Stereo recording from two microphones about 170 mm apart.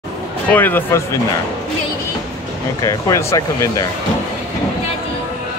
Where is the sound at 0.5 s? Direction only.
10° left (ahead or behind).